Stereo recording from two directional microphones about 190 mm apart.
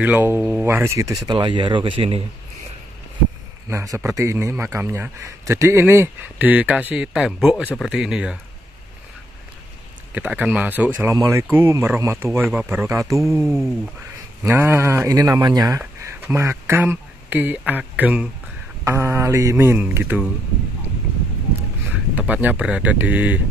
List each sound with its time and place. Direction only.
0.0 s a man's voice: 10° right (ahead or behind); by 2.2 s 30° right (ahead or behind)
3.6 s a man's voice: 15° right (ahead or behind)
7.6 s speech: 5° left (ahead or behind)
7.9 s speech: 5° right (ahead or behind)
10.1 s a man's voice: 5° right (ahead or behind)
22.1 s a man's voice: 10° right (ahead or behind)